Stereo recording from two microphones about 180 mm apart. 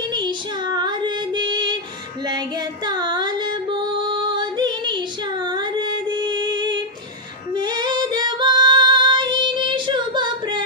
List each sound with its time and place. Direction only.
0.1 s music: 25° right (ahead or behind)
2.2 s female singing: 25° right (ahead or behind)